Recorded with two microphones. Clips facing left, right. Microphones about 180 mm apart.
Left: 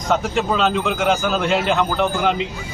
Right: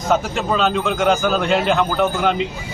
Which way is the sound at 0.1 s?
Centre (ahead or behind).